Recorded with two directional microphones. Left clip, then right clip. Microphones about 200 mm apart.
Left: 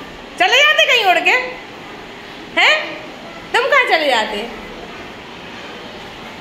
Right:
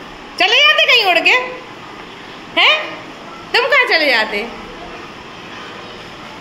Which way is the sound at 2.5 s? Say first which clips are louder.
Right 1 dB; 20° right (ahead or behind).